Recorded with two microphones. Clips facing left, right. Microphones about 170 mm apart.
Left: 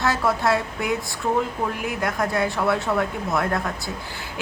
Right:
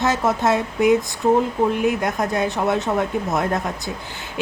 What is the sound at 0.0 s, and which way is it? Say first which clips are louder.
Speech: right 2 dB; 20° right (ahead or behind).